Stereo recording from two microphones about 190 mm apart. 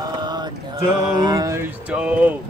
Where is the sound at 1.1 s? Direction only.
20° right (ahead or behind).